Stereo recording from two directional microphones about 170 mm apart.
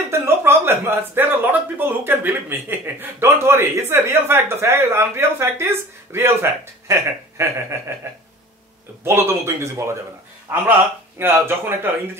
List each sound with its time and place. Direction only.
0.2 s speech: 15° right (ahead or behind)